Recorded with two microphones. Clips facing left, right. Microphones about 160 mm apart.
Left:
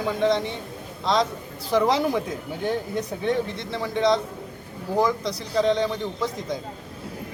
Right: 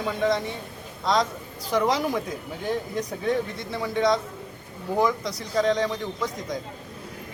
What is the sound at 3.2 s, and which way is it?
Speech, 25° left (ahead or behind).